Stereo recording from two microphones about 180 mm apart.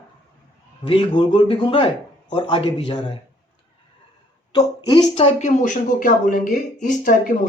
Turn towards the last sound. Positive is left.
turn(degrees=45)  # may be behind; listen again after turning